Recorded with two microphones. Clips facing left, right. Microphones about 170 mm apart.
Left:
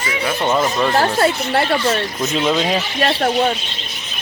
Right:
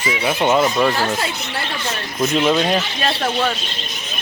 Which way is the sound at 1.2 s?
65° left (ahead or behind).